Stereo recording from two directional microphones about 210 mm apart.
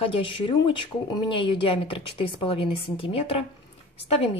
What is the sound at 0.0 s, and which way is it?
Speech, 25° left (ahead or behind).